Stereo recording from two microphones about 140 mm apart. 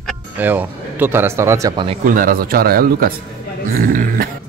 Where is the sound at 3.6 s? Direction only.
75° right (ahead or behind).